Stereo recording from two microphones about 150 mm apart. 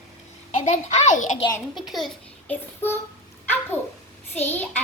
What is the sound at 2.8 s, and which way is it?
Speech, 15° left (ahead or behind).